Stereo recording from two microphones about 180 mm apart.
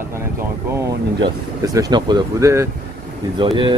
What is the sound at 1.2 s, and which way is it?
Speech, 20° right (ahead or behind).